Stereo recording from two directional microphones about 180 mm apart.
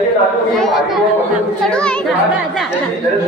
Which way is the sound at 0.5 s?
Centre (ahead or behind).